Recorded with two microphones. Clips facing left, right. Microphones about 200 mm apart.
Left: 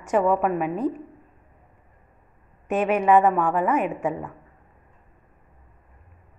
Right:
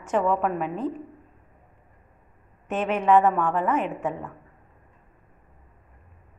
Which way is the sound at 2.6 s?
10° left (ahead or behind).